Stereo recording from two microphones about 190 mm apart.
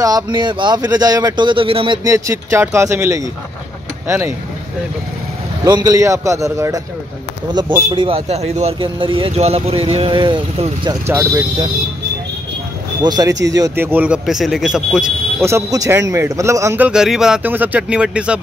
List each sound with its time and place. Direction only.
0.0 s speech: 20° right (ahead or behind)
2.0 s a man's voice: 15° right (ahead or behind)
5.7 s a man's voice: 20° right (ahead or behind)
7.9 s speech: 30° right (ahead or behind)
11.1 s a man's voice: 15° right (ahead or behind)
13.0 s speech: 20° right (ahead or behind); by 15.1 s 5° right (ahead or behind)
15.4 s a man's voice: 15° right (ahead or behind)